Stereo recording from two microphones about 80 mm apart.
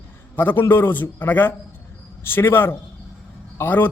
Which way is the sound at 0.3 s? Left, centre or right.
Left.